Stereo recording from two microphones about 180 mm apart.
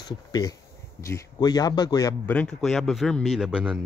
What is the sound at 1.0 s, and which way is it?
Speech, 15° left (ahead or behind).